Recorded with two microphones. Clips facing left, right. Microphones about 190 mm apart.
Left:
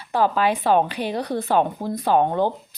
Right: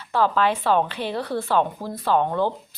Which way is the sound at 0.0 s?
15° left (ahead or behind).